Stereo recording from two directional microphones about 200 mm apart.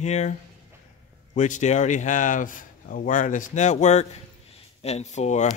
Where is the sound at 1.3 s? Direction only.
35° left (ahead or behind).